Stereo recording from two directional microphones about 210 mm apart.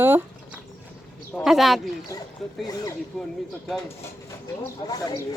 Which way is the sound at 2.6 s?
15° left (ahead or behind).